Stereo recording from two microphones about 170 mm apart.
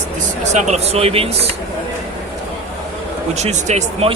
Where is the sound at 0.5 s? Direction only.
40° right (ahead or behind).